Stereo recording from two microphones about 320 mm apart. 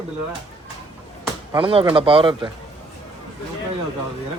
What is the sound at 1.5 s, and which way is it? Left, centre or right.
Speech, centre.